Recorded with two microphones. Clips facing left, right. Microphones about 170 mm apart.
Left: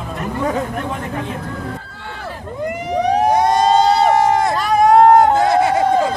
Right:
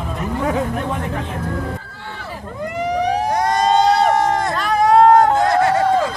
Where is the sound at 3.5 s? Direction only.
5° left (ahead or behind).